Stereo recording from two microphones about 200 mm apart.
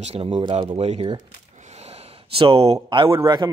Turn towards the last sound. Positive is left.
turn(degrees=-20)  # may be behind; listen again after turning